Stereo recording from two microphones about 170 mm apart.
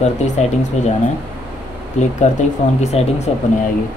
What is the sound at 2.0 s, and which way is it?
Speech, 40° left (ahead or behind).